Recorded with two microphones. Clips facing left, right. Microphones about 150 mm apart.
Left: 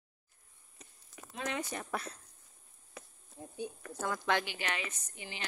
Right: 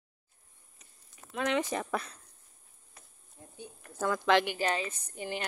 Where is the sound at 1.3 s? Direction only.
85° right.